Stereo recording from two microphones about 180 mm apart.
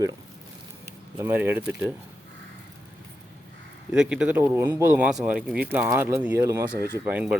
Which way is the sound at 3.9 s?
5° right (ahead or behind).